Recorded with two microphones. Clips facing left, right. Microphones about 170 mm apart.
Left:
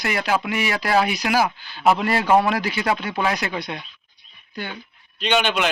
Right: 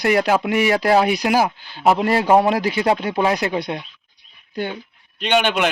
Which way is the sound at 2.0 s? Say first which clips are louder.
Right 3 dB; 35° right (ahead or behind).